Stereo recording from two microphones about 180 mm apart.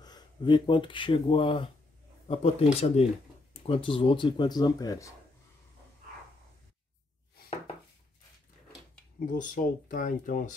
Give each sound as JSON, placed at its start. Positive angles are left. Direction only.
{"t": 0.0, "sound": "speech", "side_deg": 25}
{"t": 9.2, "sound": "speech", "side_deg": 50}